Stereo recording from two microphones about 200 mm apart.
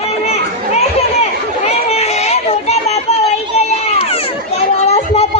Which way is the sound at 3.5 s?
30° left (ahead or behind).